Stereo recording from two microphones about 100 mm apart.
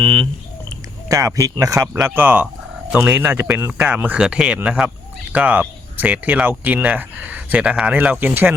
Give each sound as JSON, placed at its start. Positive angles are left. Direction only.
{"t": 0.0, "sound": "speech", "side_deg": -50}
{"t": 1.0, "sound": "speech", "side_deg": -30}
{"t": 2.0, "sound": "speech", "side_deg": -15}